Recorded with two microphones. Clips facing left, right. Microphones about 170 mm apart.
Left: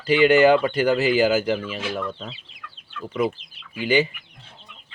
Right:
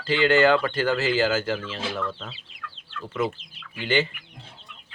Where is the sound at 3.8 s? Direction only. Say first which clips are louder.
Left 4 dB; 10° left (ahead or behind).